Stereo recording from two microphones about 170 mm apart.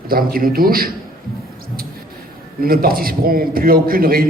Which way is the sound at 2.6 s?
60° right (ahead or behind).